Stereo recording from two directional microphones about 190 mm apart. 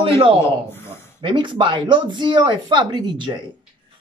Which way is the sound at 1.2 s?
25° right (ahead or behind).